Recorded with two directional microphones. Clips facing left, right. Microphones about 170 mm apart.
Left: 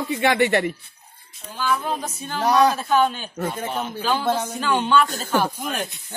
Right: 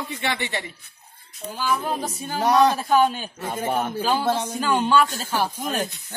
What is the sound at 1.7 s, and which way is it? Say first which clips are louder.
Speech: even; 10° right (ahead or behind).